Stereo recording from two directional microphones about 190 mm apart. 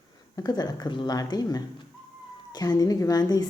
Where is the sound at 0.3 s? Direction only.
20° left (ahead or behind).